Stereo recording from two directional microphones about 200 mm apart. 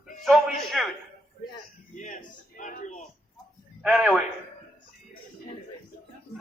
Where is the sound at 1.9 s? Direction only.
40° left (ahead or behind).